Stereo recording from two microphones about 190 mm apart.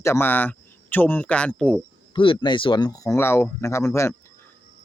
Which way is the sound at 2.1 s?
25° left (ahead or behind).